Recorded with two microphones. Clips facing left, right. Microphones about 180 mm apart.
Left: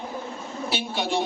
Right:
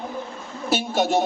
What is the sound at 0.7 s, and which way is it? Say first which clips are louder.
Speech: right 7 dB; 45° right (ahead or behind).